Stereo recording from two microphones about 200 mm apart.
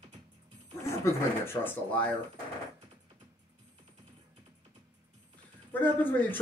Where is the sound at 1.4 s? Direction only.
10° left (ahead or behind).